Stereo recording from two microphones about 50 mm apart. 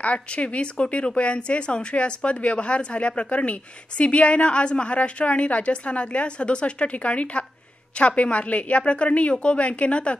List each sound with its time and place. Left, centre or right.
0.0 s speech: left